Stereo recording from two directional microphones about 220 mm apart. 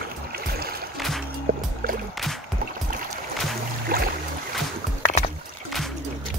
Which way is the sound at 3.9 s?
40° right (ahead or behind).